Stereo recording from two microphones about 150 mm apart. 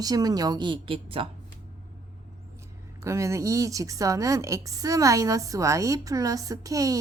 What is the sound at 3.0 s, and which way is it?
A woman's voice, 20° right (ahead or behind).